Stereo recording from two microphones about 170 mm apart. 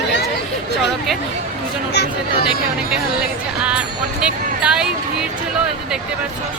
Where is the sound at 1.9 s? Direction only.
85° left.